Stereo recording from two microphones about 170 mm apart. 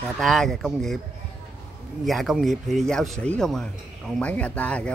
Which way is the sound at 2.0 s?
Centre (ahead or behind).